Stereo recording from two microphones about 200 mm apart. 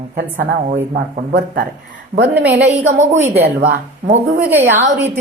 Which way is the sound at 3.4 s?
55° right (ahead or behind).